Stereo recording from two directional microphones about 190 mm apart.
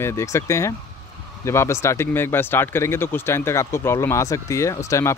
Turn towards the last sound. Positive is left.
turn(degrees=15)  # may be behind; listen again after turning